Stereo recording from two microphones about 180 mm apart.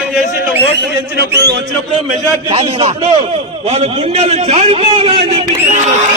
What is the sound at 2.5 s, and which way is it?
A man's voice, 30° right (ahead or behind).